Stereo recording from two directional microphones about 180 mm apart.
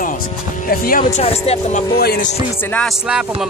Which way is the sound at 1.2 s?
35° left (ahead or behind).